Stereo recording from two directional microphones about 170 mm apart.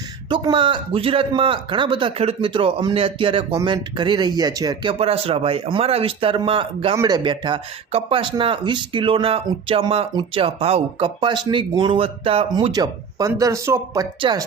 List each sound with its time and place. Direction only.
0.3 s speech: 30° right (ahead or behind)
6.9 s speech: 15° right (ahead or behind)
7.2 s speech: 30° right (ahead or behind)